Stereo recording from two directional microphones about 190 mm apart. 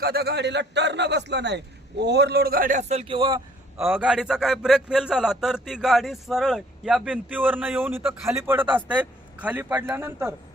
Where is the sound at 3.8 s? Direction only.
10° right (ahead or behind).